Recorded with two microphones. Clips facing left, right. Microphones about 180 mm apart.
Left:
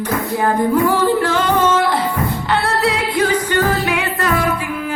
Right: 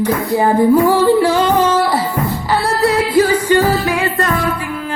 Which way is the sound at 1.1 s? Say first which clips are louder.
Right 4 dB; 10° right (ahead or behind).